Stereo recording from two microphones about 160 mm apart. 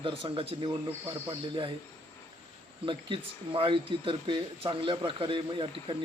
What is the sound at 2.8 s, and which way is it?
Speech, 30° right (ahead or behind).